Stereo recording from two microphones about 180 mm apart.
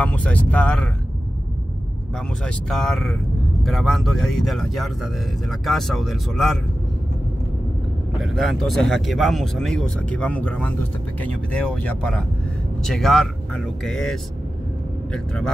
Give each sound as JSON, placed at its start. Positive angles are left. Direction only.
{"t": 0.0, "sound": "vehicle", "side_deg": 5}
{"t": 2.1, "sound": "speech", "side_deg": 0}
{"t": 8.2, "sound": "speech", "side_deg": 0}